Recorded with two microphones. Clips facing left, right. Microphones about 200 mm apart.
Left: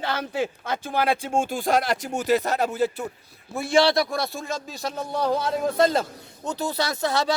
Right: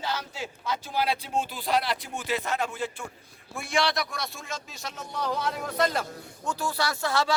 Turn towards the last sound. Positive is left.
turn(degrees=20)  # may be behind; listen again after turning